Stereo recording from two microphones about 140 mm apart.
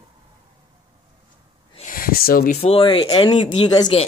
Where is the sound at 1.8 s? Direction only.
80° left.